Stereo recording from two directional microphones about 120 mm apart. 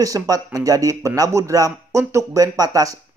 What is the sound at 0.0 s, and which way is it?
Speech, 30° right (ahead or behind).